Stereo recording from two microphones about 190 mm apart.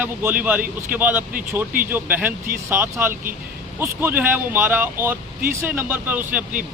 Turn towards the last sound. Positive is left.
turn(degrees=-10)  # may be behind; listen again after turning